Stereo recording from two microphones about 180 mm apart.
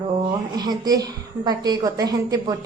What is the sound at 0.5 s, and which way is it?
A woman's voice, 20° right (ahead or behind).